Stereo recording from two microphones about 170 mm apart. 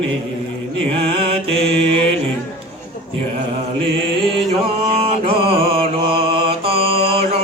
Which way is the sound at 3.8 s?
30° right (ahead or behind).